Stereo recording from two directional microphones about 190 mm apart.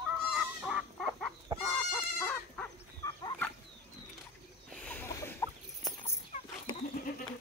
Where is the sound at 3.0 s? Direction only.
20° left (ahead or behind).